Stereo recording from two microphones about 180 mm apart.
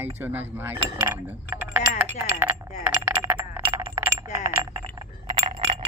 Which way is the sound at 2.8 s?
10° right (ahead or behind).